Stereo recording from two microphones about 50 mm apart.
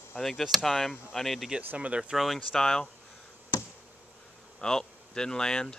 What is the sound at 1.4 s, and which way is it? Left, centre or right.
Speech, right.